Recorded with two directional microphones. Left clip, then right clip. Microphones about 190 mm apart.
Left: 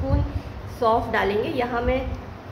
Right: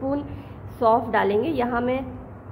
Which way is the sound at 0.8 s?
40° right (ahead or behind).